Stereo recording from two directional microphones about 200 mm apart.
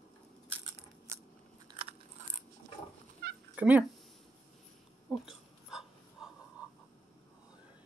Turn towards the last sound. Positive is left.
turn(degrees=-5)  # may be behind; listen again after turning